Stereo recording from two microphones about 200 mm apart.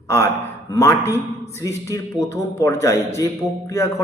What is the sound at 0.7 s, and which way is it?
A man's voice, 15° left (ahead or behind).